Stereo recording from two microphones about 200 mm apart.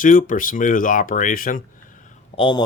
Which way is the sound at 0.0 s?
40° left (ahead or behind).